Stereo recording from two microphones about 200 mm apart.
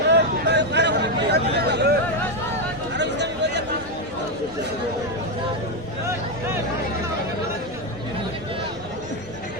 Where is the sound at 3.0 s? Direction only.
60° right (ahead or behind).